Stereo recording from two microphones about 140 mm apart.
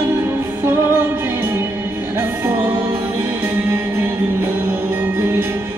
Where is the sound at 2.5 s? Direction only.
15° right (ahead or behind).